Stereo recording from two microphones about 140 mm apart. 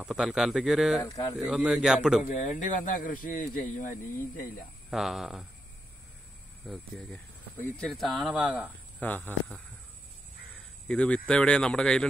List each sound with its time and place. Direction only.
0.0 s speech: 5° right (ahead or behind)
2.3 s speech: 55° left (ahead or behind)
4.9 s speech: centre (ahead or behind)
6.6 s speech: centre (ahead or behind)
9.0 s speech: 10° left (ahead or behind)
10.9 s speech: 5° left (ahead or behind)